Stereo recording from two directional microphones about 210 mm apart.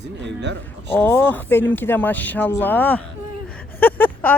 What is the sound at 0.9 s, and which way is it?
Speech, 10° left (ahead or behind).